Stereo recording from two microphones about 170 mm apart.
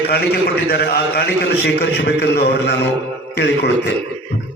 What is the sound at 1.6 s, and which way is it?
A man's voice, 75° left (ahead or behind).